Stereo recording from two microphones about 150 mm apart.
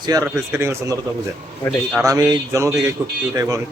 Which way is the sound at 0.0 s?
25° right (ahead or behind).